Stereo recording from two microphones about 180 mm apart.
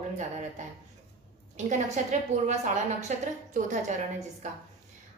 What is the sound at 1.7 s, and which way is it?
Speech, 40° right (ahead or behind).